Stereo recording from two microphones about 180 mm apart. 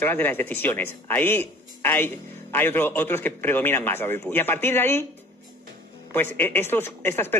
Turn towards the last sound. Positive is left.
turn(degrees=10)  # may be behind; listen again after turning